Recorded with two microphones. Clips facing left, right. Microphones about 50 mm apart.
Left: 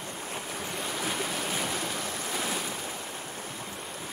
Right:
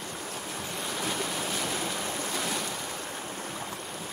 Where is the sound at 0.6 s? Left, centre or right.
Centre.